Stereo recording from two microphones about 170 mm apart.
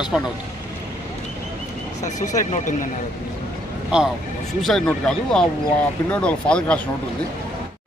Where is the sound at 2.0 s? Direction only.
45° left (ahead or behind).